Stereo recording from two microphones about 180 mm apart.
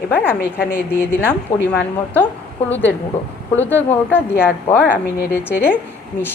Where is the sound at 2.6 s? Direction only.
10° left (ahead or behind).